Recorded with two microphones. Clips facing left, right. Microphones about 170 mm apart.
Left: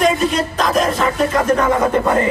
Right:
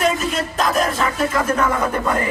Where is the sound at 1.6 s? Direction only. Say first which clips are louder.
Left 4 dB; 30° left (ahead or behind).